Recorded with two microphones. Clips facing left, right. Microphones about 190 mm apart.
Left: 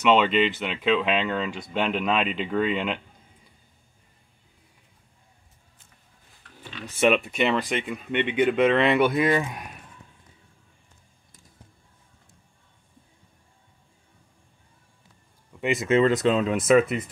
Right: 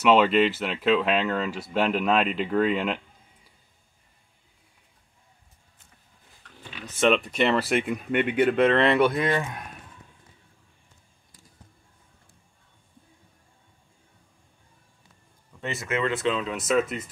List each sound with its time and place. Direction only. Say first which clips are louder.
0.0 s speech: right 1 dB; 5° right (ahead or behind)
7.0 s speech: even; 5° left (ahead or behind)
15.6 s speech: left 8 dB; 15° left (ahead or behind)
15.9 s speech: left 6 dB; 35° left (ahead or behind); by 17.0 s 60° left (ahead or behind)